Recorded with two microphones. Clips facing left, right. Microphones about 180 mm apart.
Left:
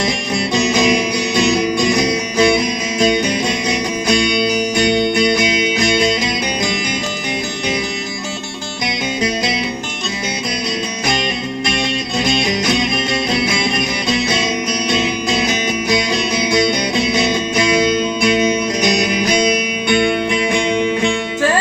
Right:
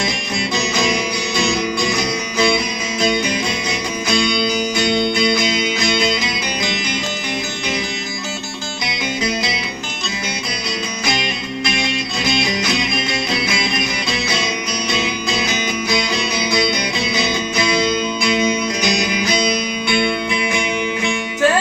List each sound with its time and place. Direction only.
0.8 s music: 15° left (ahead or behind)
1.4 s music: 35° left (ahead or behind)
4.9 s music: 15° left (ahead or behind)
5.8 s music: 40° left (ahead or behind)
13.4 s music: 40° left (ahead or behind)
17.2 s music: 35° left (ahead or behind)
20.3 s music: 25° left (ahead or behind)